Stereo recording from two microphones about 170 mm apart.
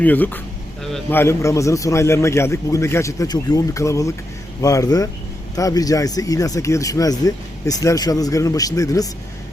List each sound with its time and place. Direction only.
0.0 s a man's voice: 10° left (ahead or behind)
0.8 s a sound: centre (ahead or behind)
1.1 s a man's voice: 15° left (ahead or behind)